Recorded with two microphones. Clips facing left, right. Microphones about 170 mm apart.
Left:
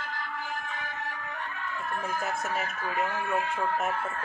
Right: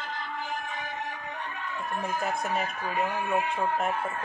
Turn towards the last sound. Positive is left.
turn(degrees=-15)  # may be behind; listen again after turning